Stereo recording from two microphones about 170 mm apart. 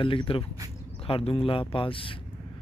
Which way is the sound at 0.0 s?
30° left (ahead or behind).